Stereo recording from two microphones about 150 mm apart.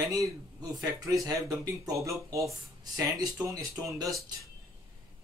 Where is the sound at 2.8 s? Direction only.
25° right (ahead or behind).